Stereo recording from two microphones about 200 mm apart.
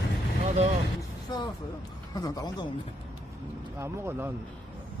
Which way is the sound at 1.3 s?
20° left (ahead or behind).